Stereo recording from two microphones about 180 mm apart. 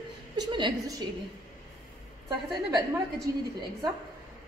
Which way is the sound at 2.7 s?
20° right (ahead or behind).